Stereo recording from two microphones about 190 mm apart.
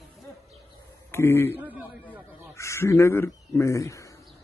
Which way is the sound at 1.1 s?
10° left (ahead or behind).